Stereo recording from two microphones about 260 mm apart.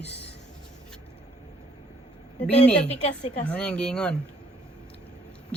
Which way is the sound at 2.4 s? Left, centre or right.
Left.